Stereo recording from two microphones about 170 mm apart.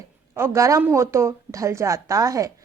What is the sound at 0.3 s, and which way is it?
Speech, 15° right (ahead or behind).